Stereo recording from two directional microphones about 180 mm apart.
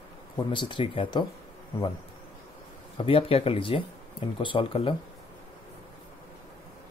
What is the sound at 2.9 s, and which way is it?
Speech, 30° left (ahead or behind).